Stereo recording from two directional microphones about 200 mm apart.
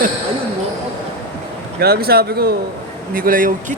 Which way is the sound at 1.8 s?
50° right (ahead or behind).